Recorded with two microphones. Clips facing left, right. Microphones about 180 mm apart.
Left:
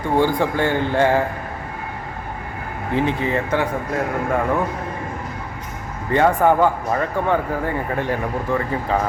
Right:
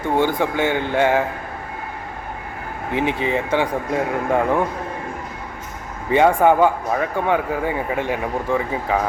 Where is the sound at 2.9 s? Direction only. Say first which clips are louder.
Even; 15° right (ahead or behind).